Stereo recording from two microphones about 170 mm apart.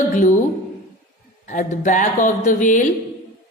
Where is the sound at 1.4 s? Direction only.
50° left (ahead or behind).